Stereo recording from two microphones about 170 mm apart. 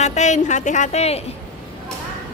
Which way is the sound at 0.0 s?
45° left (ahead or behind).